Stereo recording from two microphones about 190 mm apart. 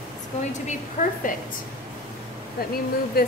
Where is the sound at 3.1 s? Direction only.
55° left (ahead or behind).